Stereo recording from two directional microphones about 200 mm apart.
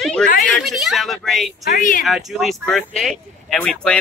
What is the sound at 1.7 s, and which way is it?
Speech, 45° left (ahead or behind).